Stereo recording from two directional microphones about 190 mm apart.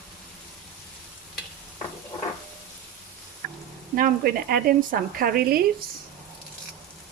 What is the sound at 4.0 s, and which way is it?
Speech, 50° right (ahead or behind).